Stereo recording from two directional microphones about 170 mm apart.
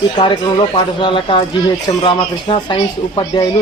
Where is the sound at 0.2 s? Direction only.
30° left (ahead or behind).